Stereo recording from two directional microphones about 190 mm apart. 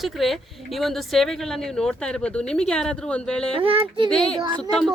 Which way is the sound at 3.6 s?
30° right (ahead or behind).